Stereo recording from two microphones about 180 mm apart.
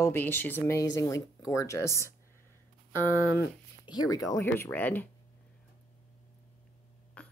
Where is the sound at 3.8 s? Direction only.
20° left (ahead or behind).